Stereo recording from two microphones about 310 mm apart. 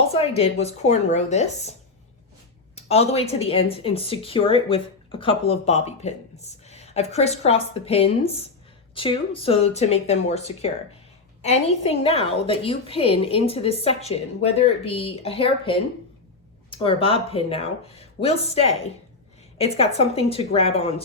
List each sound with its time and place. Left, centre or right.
0.1 s speech: centre
2.7 s speech: centre